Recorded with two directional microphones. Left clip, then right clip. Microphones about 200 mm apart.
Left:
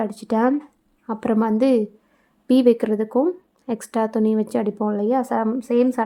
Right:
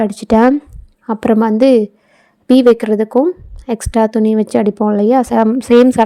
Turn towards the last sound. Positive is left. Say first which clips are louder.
# right 11 dB
turn(degrees=-35)  # may be behind; listen again after turning